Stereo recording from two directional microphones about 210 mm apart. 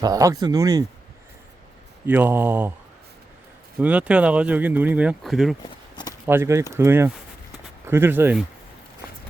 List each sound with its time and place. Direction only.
0.0 s speech: 15° right (ahead or behind)
2.0 s speech: 10° right (ahead or behind)
3.8 s speech: 5° right (ahead or behind)
5.6 s walk: 20° left (ahead or behind)
6.2 s speech: 10° right (ahead or behind)